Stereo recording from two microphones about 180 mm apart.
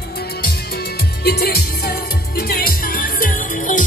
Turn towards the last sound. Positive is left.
turn(degrees=45)  # may be behind; listen again after turning